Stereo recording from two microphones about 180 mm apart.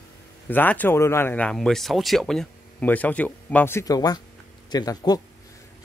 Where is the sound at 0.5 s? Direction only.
10° left (ahead or behind).